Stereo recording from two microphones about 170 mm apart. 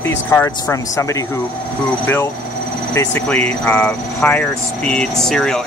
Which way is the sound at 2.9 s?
15° left (ahead or behind).